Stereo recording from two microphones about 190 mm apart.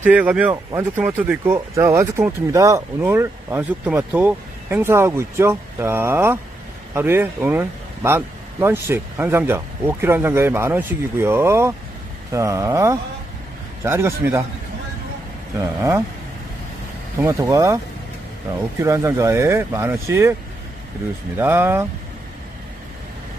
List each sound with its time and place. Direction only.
0.0 s speech: 10° right (ahead or behind)
15.6 s speech: 15° right (ahead or behind)
17.2 s speech: 15° right (ahead or behind)
18.8 s speech: 15° right (ahead or behind)
21.4 s speech: 10° right (ahead or behind)